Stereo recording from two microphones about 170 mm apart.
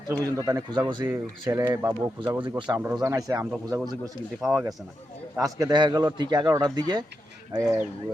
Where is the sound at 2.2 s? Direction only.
30° right (ahead or behind).